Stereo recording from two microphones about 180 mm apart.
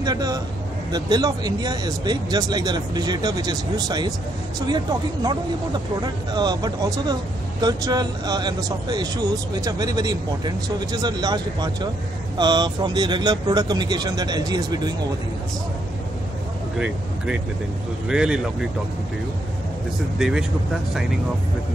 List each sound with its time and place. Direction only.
0.0 s a man's voice: 20° right (ahead or behind)
16.7 s speech: 5° right (ahead or behind)
20.2 s speech: 5° right (ahead or behind)